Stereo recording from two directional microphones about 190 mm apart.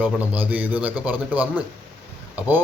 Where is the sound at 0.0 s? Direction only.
10° right (ahead or behind).